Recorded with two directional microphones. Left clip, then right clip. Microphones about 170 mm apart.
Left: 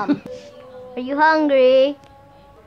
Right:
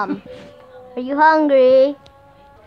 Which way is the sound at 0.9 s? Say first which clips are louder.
Right 3 dB; 35° right (ahead or behind).